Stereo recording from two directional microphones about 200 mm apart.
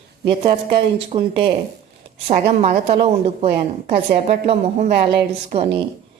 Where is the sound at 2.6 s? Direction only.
30° right (ahead or behind).